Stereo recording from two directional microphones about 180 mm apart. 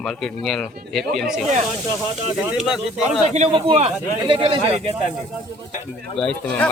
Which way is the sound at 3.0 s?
40° right (ahead or behind).